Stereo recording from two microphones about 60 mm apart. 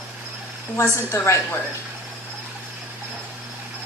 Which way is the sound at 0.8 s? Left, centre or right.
Left.